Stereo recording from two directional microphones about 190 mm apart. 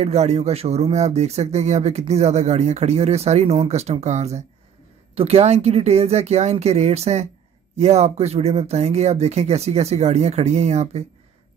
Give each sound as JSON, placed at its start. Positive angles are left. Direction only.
{"t": 0.0, "sound": "speech", "side_deg": -35}